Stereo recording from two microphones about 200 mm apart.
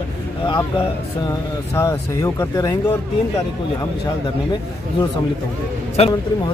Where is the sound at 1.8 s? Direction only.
15° left (ahead or behind).